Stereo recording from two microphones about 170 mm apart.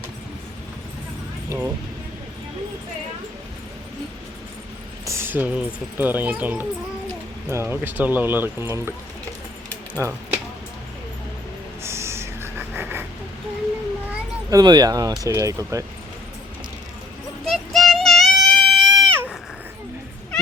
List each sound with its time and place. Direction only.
1.5 s speech: 10° right (ahead or behind)
5.0 s speech: 15° right (ahead or behind)
10.0 s speech: 20° right (ahead or behind)
11.8 s snort: 15° right (ahead or behind)
14.5 s speech: 25° right (ahead or behind)
17.4 s child singing: centre (ahead or behind)